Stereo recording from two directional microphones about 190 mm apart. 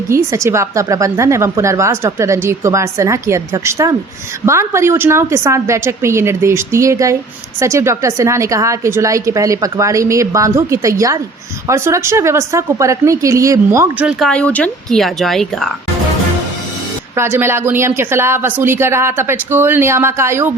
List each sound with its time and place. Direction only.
0.1 s a woman's voice: 15° right (ahead or behind)
14.1 s a woman's voice: centre (ahead or behind)
17.2 s a woman's voice: 10° right (ahead or behind)